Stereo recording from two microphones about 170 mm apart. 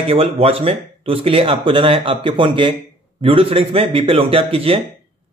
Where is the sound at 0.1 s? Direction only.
35° right (ahead or behind).